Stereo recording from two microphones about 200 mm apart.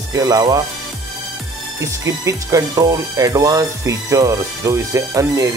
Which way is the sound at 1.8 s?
15° right (ahead or behind).